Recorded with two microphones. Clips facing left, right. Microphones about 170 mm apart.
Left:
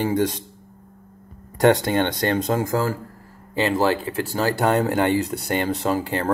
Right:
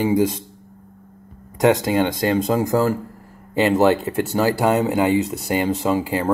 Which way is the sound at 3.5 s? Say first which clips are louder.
Right 4 dB; 20° right (ahead or behind).